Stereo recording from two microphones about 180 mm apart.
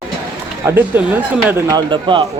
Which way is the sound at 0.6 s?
15° right (ahead or behind).